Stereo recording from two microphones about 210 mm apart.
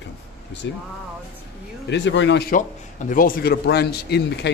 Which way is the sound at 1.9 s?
60° left (ahead or behind).